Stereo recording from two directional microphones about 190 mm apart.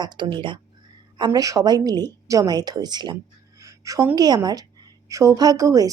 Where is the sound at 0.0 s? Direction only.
25° right (ahead or behind).